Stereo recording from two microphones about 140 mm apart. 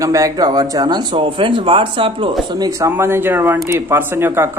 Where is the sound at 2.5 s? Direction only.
25° right (ahead or behind).